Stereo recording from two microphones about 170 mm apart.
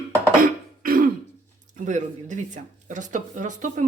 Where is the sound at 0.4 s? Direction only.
55° right (ahead or behind).